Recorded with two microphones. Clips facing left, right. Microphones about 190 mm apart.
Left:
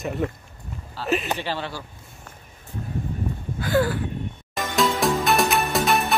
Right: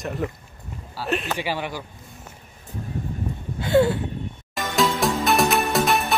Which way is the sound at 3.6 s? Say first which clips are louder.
Right 4 dB; 25° right (ahead or behind).